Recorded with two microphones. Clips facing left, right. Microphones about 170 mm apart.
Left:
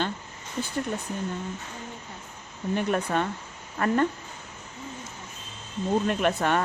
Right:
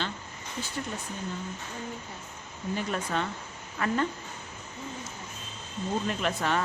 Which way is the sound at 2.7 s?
50° left (ahead or behind).